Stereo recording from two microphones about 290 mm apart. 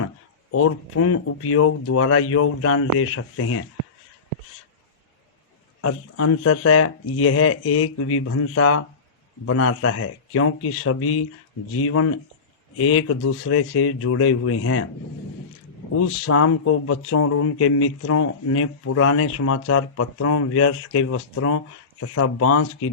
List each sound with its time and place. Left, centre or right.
0.5 s speech: left
5.8 s speech: left
16.0 s speech: left